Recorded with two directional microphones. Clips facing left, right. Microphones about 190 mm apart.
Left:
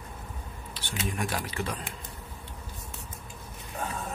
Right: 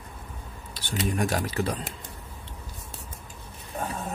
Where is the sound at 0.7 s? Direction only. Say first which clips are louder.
Right 6 dB; 40° right (ahead or behind).